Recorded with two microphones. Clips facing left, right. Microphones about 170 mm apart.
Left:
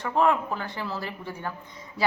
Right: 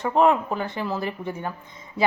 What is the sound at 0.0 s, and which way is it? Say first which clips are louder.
A woman's voice: right 4 dB; 20° right (ahead or behind).